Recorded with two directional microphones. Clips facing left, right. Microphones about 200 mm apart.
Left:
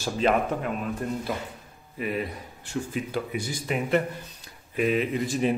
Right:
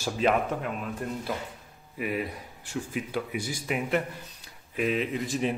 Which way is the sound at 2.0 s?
10° right (ahead or behind).